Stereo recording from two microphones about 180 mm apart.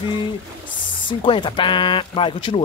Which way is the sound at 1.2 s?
25° left (ahead or behind).